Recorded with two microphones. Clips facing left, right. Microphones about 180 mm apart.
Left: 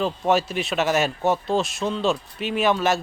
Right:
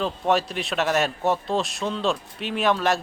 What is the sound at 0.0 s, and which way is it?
Speech, centre (ahead or behind).